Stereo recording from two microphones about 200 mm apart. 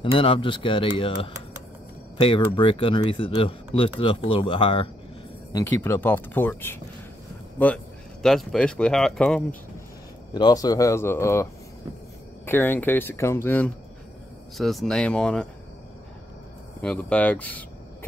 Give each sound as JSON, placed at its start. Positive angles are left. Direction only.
{"t": 0.0, "sound": "speech", "side_deg": 25}
{"t": 5.5, "sound": "speech", "side_deg": 10}
{"t": 10.3, "sound": "speech", "side_deg": 20}
{"t": 12.4, "sound": "speech", "side_deg": 10}
{"t": 14.6, "sound": "speech", "side_deg": 0}
{"t": 16.8, "sound": "speech", "side_deg": 5}